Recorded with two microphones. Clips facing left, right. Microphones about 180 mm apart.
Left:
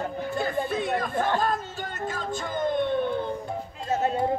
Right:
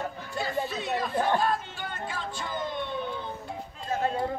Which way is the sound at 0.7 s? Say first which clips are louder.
Left 4 dB; 50° left (ahead or behind).